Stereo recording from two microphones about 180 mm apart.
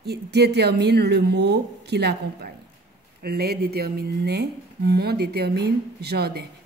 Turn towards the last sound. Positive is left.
turn(degrees=-60)  # may be behind; listen again after turning